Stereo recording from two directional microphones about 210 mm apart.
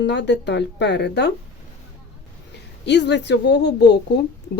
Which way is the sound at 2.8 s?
55° left (ahead or behind).